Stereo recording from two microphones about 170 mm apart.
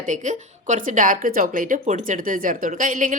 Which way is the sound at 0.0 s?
45° right (ahead or behind).